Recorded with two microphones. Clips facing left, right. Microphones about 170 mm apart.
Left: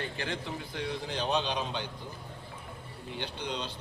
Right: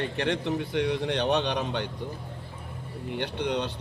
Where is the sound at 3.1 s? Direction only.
65° right (ahead or behind).